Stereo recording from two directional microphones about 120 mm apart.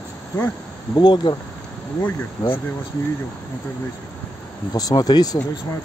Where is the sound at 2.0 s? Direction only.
15° left (ahead or behind).